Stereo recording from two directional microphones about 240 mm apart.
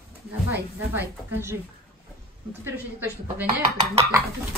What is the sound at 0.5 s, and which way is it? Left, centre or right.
A woman's voice, centre.